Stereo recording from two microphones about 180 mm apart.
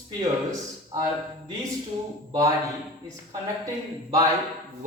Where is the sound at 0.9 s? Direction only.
20° right (ahead or behind).